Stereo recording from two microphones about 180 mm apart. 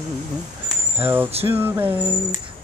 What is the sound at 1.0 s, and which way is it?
Mantra, 10° right (ahead or behind).